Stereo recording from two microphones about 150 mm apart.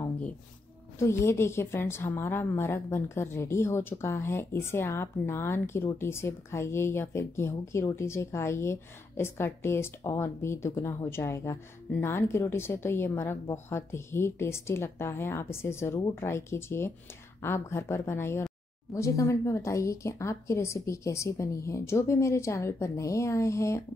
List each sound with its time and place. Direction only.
0.9 s a woman's voice: 20° left (ahead or behind)